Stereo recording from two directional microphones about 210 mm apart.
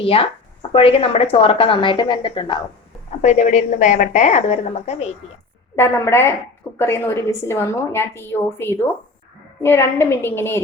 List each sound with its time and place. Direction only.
0.0 s a woman's voice: 25° left (ahead or behind)
3.2 s a woman's voice: 35° left (ahead or behind)
5.7 s a woman's voice: 10° left (ahead or behind)